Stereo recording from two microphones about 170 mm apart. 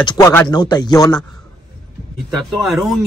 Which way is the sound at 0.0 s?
15° left (ahead or behind).